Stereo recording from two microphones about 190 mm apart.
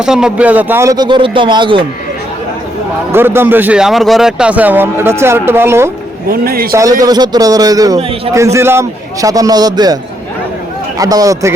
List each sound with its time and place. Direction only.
0.0 s a man's voice: 5° right (ahead or behind); by 1.9 s 25° right (ahead or behind)
3.1 s speech: 10° right (ahead or behind)
6.2 s a man's voice: 50° right (ahead or behind)
7.0 s a man's voice: 20° right (ahead or behind)